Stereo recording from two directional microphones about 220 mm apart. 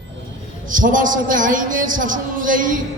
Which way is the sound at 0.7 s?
35° right (ahead or behind).